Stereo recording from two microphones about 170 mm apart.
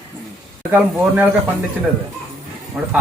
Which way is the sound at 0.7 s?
10° right (ahead or behind).